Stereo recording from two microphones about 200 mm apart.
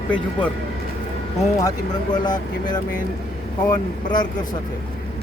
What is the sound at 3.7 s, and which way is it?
Speech, 20° left (ahead or behind).